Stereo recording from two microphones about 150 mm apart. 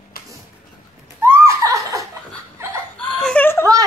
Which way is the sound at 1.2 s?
15° right (ahead or behind).